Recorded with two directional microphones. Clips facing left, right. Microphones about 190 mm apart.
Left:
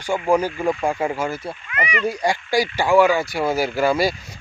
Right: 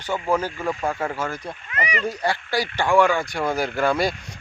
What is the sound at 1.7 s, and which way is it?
Speech, 35° right (ahead or behind).